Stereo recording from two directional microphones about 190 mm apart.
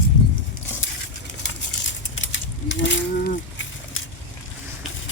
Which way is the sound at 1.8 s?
80° left.